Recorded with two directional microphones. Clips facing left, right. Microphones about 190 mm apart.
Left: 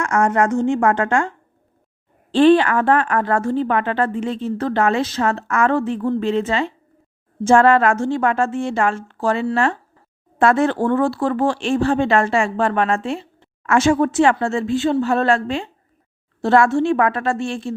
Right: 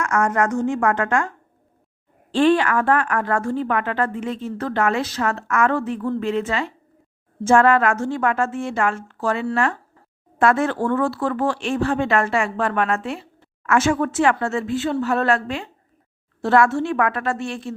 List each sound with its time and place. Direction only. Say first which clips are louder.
0.0 s a woman's voice: left 3 dB; 30° left (ahead or behind)
2.3 s a woman's voice: left 4 dB; 30° left (ahead or behind)